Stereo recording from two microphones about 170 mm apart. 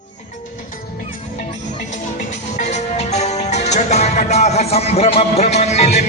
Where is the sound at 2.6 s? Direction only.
40° left (ahead or behind).